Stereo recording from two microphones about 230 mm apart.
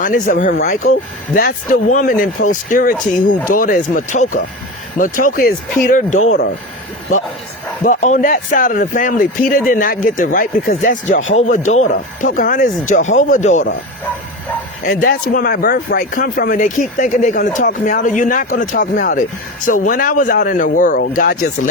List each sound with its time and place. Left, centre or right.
0.0 s speech: left
7.9 s speech: left
14.8 s speech: left